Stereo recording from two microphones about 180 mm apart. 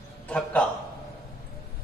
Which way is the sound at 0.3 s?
5° left (ahead or behind).